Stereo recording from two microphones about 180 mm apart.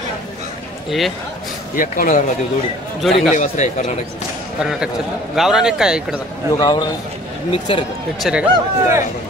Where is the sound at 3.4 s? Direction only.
40° left (ahead or behind).